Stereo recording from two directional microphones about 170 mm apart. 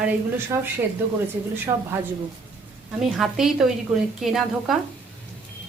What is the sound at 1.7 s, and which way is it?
Speech, 35° right (ahead or behind).